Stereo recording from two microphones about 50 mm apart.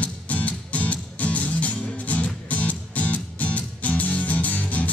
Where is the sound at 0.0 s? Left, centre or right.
Left.